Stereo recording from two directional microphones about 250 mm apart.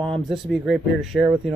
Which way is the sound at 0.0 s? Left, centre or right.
Centre.